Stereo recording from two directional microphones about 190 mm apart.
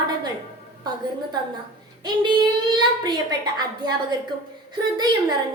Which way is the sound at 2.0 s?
25° right (ahead or behind).